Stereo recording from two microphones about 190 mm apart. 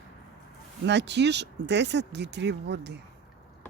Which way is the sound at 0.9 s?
65° right (ahead or behind).